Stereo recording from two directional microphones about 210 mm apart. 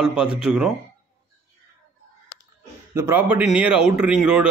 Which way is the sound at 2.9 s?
10° right (ahead or behind).